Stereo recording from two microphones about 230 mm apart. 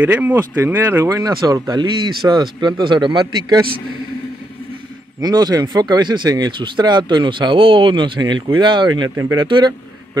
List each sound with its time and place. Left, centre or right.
0.0 s speech: centre
5.2 s speech: centre